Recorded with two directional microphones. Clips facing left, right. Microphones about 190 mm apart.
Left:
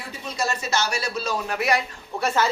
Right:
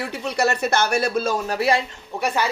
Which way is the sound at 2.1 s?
15° right (ahead or behind).